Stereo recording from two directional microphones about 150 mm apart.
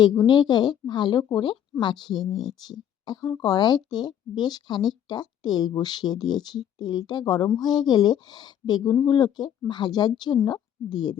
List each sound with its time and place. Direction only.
0.2 s speech: 30° left (ahead or behind)